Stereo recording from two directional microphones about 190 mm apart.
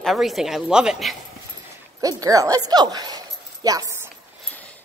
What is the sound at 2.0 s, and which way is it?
A woman's voice, 20° right (ahead or behind).